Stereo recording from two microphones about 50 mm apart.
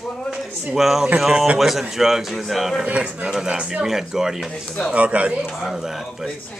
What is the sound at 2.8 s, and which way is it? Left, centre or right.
Speech, right.